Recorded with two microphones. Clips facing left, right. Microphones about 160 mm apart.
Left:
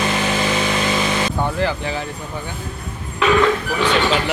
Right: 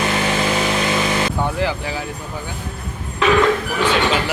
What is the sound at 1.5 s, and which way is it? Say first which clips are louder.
Speech: left 1 dB; 15° right (ahead or behind).